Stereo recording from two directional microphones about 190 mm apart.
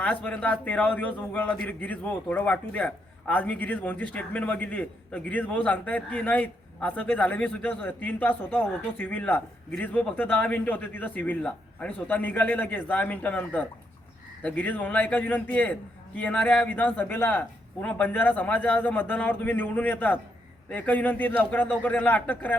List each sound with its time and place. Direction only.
0.0 s a man's voice: 5° left (ahead or behind)